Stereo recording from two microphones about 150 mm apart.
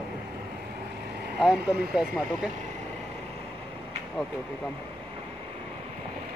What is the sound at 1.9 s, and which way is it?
Speech, 5° right (ahead or behind).